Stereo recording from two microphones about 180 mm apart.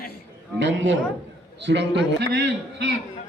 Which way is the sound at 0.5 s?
85° right.